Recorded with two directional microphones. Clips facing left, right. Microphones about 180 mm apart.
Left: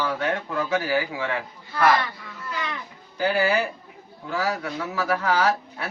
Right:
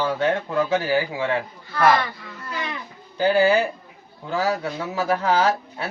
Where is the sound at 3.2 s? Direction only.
25° right (ahead or behind).